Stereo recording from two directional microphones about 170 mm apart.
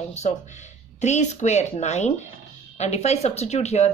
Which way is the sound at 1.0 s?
45° left (ahead or behind).